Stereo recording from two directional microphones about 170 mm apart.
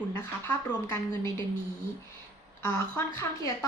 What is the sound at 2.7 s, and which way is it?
Speech, 20° left (ahead or behind).